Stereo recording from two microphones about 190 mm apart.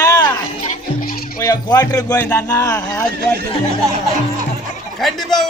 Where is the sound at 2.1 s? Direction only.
10° left (ahead or behind).